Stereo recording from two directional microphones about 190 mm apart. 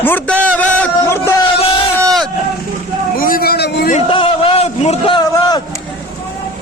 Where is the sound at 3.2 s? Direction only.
50° left (ahead or behind).